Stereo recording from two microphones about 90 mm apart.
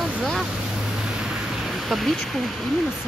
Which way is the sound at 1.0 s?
5° right (ahead or behind).